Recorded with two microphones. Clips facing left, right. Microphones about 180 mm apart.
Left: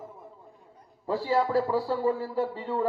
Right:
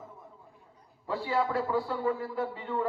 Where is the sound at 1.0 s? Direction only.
35° left (ahead or behind).